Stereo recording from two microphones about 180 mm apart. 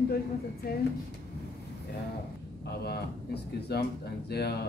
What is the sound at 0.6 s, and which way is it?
Speech, 60° left (ahead or behind).